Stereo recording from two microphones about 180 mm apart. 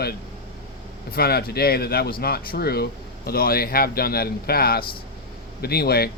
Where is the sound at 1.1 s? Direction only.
60° left (ahead or behind).